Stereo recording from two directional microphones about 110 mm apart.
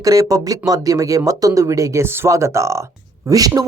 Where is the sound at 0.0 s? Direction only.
30° right (ahead or behind).